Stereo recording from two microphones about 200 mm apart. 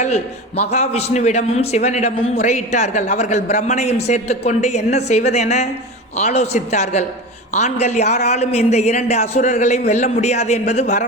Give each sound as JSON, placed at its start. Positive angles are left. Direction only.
{"t": 0.0, "sound": "a man's voice", "side_deg": 35}